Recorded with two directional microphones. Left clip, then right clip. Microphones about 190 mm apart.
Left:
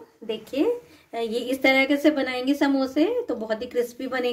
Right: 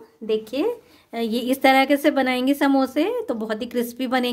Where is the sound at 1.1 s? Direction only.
65° right (ahead or behind).